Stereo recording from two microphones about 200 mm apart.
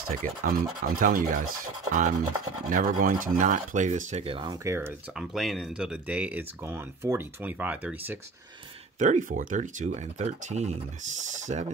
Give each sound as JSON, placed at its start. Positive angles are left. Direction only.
{"t": 0.0, "sound": "speech", "side_deg": -45}
{"t": 9.0, "sound": "speech", "side_deg": -40}